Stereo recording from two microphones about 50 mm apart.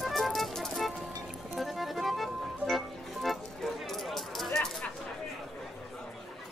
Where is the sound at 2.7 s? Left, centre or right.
Centre.